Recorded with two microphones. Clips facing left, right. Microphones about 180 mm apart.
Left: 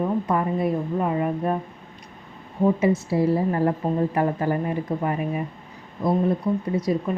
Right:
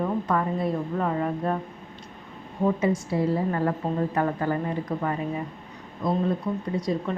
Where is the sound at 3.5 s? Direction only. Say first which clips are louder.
Left 3 dB; 25° left (ahead or behind).